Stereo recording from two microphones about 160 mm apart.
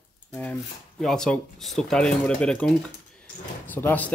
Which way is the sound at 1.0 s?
5° left (ahead or behind).